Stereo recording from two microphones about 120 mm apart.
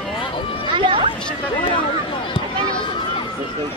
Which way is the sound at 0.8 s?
45° right (ahead or behind).